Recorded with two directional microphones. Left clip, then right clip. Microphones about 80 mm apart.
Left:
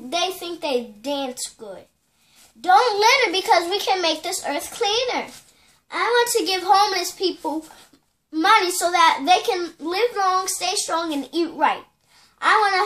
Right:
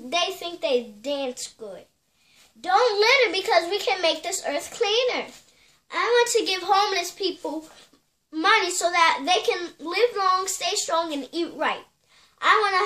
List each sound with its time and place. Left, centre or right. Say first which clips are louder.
0.1 s a child's voice: left 1 dB; right